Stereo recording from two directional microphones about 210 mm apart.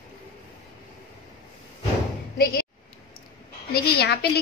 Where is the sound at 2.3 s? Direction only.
45° left (ahead or behind).